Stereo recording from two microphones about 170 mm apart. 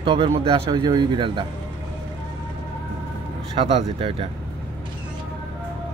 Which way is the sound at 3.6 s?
30° right (ahead or behind).